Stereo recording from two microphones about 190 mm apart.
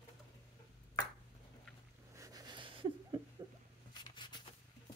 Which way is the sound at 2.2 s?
20° right (ahead or behind).